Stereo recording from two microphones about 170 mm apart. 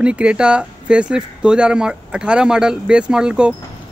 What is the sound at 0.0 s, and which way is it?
Speech, 5° right (ahead or behind).